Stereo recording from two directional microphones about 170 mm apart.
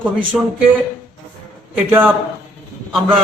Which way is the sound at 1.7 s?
10° right (ahead or behind).